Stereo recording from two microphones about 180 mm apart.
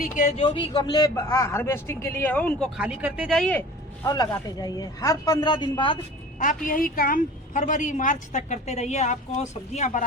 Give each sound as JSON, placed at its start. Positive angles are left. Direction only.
{"t": 0.3, "sound": "a man's voice", "side_deg": 30}
{"t": 2.7, "sound": "a woman's voice", "side_deg": -5}
{"t": 4.0, "sound": "a man's voice", "side_deg": 20}
{"t": 6.4, "sound": "a woman's voice", "side_deg": 50}